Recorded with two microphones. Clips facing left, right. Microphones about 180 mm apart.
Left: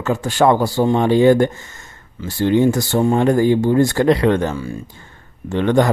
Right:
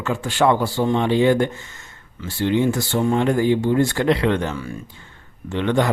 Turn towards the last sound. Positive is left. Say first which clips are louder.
# left 4 dB
turn(degrees=45)  # may be behind; listen again after turning